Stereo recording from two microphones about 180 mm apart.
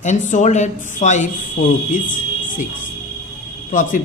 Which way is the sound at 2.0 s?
45° left (ahead or behind).